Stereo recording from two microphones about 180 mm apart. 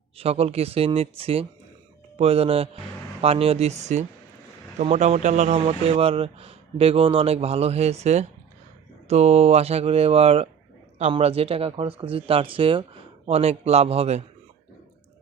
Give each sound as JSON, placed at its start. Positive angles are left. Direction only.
{"t": 0.2, "sound": "speech", "side_deg": -35}